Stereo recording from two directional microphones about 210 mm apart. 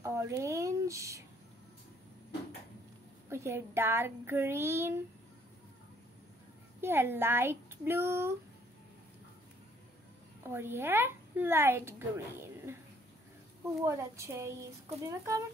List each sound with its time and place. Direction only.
0.0 s a sound: 15° right (ahead or behind)
3.3 s speech: 10° right (ahead or behind)
6.8 s speech: 10° right (ahead or behind)
10.4 s speech: 10° right (ahead or behind)
13.8 s speech: 15° right (ahead or behind)